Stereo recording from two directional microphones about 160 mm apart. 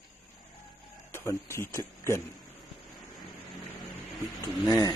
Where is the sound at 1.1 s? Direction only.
15° left (ahead or behind).